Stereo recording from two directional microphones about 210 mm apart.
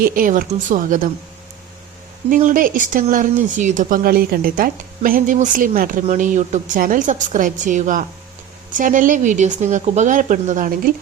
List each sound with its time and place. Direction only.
0.0 s speech: 40° right (ahead or behind)
2.3 s speech: 40° right (ahead or behind)